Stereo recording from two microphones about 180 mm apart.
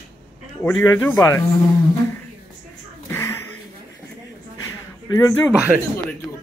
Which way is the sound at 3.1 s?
15° left (ahead or behind).